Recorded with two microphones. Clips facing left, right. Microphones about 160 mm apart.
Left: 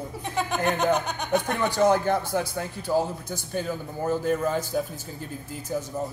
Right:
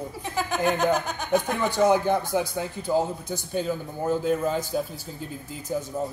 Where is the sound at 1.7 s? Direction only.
10° right (ahead or behind).